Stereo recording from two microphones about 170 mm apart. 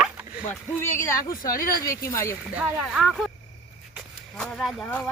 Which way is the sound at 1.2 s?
55° left (ahead or behind).